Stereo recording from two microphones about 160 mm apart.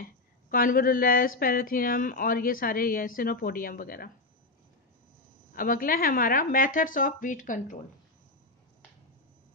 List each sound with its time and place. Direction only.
0.5 s speech: 60° left (ahead or behind)
5.5 s speech: 60° left (ahead or behind)